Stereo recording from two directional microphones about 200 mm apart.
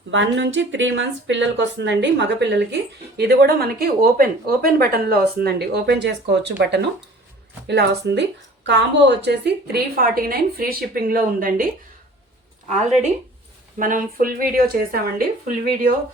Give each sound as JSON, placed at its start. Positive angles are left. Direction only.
{"t": 0.1, "sound": "a woman's voice", "side_deg": -65}
{"t": 12.6, "sound": "a woman's voice", "side_deg": -35}